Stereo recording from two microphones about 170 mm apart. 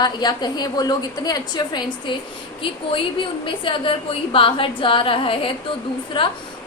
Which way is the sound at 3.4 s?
30° left (ahead or behind).